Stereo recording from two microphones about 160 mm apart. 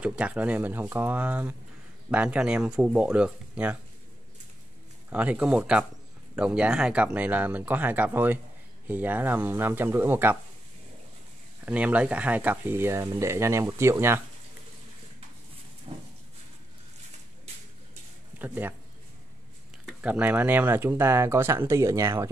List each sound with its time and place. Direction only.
0.0 s speech: 10° right (ahead or behind)
5.1 s speech: 10° right (ahead or behind)
11.6 s speech: 10° right (ahead or behind)
15.9 s a sound: 35° right (ahead or behind)
18.4 s speech: 10° right (ahead or behind)
19.9 s speech: 10° right (ahead or behind)